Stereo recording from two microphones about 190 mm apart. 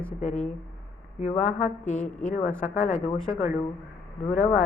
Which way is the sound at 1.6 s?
40° left (ahead or behind).